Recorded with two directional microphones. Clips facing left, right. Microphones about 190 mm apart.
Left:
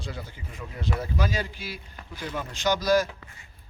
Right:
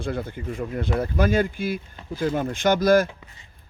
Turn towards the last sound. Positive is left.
turn(degrees=-55)  # may be behind; listen again after turning